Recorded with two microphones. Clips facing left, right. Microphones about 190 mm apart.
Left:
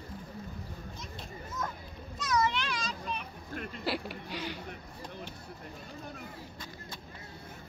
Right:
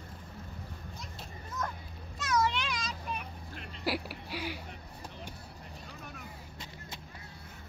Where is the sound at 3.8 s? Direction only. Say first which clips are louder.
Right 2 dB; 10° right (ahead or behind).